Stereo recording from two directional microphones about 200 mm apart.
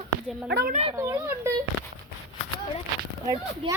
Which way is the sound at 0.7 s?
30° right (ahead or behind).